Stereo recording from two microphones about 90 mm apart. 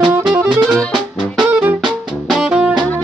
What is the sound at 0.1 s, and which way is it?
Music, 20° right (ahead or behind).